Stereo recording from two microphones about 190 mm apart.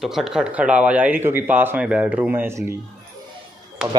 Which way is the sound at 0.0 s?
Centre (ahead or behind).